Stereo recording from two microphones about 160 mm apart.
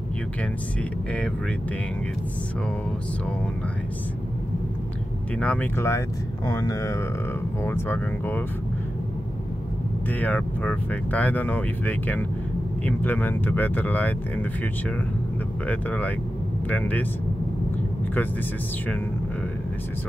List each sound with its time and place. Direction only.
5.4 s speech: 10° left (ahead or behind)
10.2 s speech: 10° left (ahead or behind)
15.6 s speech: 10° left (ahead or behind)